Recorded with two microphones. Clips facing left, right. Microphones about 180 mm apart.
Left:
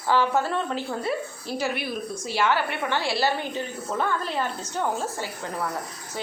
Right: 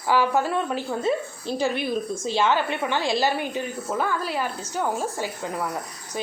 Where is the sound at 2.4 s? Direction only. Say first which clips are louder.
Right 1 dB; 20° right (ahead or behind).